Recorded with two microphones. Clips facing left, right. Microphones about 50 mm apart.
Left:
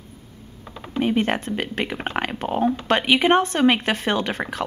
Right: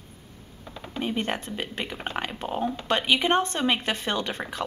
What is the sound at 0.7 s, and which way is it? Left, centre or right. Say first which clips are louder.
Typing: left 7 dB; centre.